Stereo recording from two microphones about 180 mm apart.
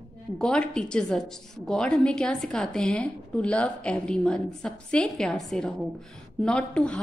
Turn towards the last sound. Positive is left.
turn(degrees=5)  # may be behind; listen again after turning